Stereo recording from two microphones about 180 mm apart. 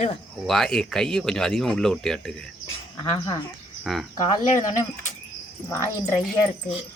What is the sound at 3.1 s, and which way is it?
Speech, 25° left (ahead or behind).